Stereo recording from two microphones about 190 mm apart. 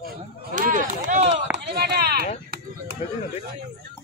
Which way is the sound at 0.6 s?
45° right (ahead or behind).